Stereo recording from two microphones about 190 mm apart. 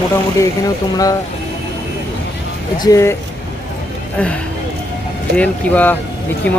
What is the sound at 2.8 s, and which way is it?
Speech, 15° left (ahead or behind).